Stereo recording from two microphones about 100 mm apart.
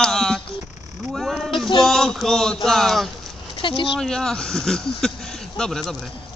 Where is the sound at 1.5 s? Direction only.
55° left (ahead or behind).